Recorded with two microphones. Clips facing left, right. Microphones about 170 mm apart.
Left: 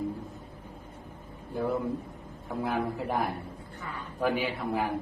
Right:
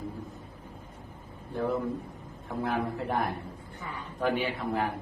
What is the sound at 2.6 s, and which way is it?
A man's voice, 10° left (ahead or behind).